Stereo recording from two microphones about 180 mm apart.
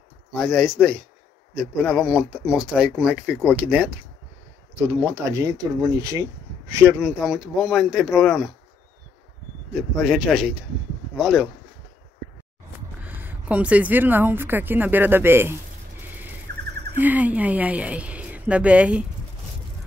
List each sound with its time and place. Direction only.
0.3 s a woman's voice: centre (ahead or behind)
9.8 s speech: centre (ahead or behind)
13.0 s a woman's voice: 10° right (ahead or behind)
16.5 s a sound: 60° right (ahead or behind)
16.9 s a woman's voice: 10° right (ahead or behind)